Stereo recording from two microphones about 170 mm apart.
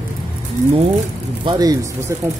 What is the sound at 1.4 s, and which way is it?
Speech, 20° right (ahead or behind).